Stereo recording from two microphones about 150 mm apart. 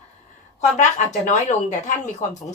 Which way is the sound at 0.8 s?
55° left (ahead or behind).